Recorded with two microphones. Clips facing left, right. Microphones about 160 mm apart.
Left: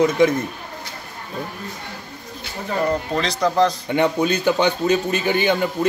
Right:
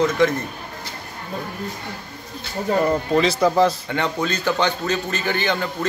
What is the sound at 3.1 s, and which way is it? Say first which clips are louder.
Speech: right 3 dB; 5° right (ahead or behind).